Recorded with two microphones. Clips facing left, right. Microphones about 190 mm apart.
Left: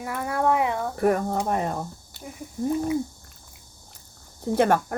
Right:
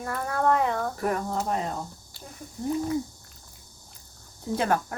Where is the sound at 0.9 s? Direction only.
55° left (ahead or behind).